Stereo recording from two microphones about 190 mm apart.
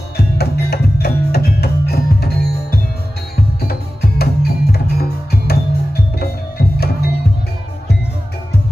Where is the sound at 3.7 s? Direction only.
55° left (ahead or behind).